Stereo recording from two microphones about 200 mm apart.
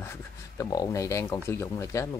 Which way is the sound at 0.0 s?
15° left (ahead or behind).